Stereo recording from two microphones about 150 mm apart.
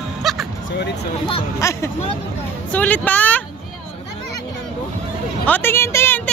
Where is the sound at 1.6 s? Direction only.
20° left (ahead or behind).